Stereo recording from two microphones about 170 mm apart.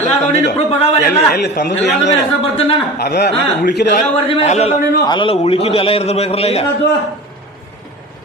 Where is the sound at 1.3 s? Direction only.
75° left (ahead or behind).